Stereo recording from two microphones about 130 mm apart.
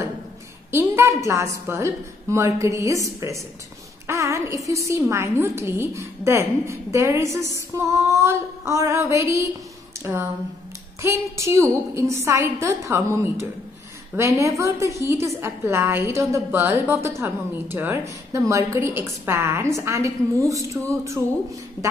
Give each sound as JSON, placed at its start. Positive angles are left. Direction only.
{"t": 0.7, "sound": "a woman's voice", "side_deg": -20}